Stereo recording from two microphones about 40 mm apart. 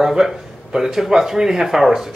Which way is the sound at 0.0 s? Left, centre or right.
Centre.